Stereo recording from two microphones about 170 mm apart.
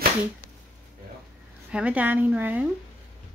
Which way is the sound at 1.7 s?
10° right (ahead or behind).